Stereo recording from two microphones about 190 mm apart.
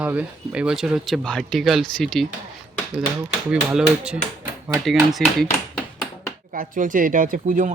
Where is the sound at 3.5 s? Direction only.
5° right (ahead or behind).